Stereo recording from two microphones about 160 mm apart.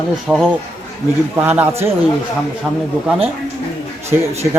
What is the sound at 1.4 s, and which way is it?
Speech, 15° right (ahead or behind).